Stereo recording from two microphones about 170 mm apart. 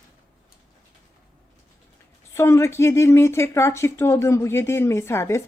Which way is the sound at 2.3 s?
15° left (ahead or behind).